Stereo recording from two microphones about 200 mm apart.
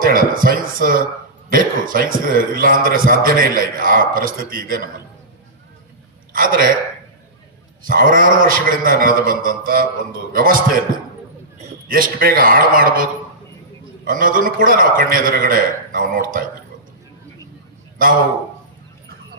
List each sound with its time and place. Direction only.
0.0 s a man's voice: 45° right (ahead or behind)
6.3 s a man's voice: 45° right (ahead or behind)
7.9 s a man's voice: 45° right (ahead or behind)
11.9 s a man's voice: 45° right (ahead or behind)